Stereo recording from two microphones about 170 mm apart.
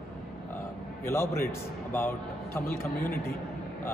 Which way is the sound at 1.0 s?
15° left (ahead or behind).